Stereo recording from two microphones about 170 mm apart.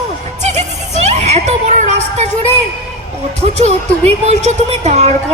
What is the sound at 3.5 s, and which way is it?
A woman's voice, 40° right (ahead or behind).